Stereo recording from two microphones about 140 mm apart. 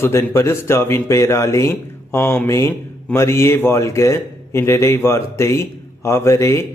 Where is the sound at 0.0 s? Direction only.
20° left (ahead or behind).